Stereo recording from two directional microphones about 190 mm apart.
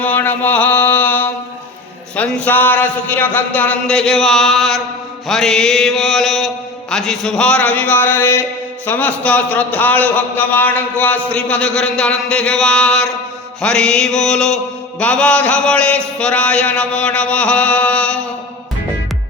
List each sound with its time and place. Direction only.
0.0 s mantra: 10° left (ahead or behind)
2.1 s a man's voice: 10° left (ahead or behind)
5.3 s mantra: 5° left (ahead or behind)
6.9 s a man's voice: centre (ahead or behind)
13.6 s mantra: 5° left (ahead or behind)